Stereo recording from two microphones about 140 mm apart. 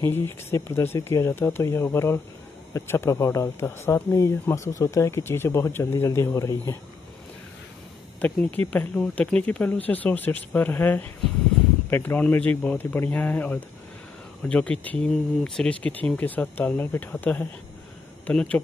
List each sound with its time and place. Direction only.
0.1 s speech: 15° left (ahead or behind)
8.2 s speech: 10° left (ahead or behind)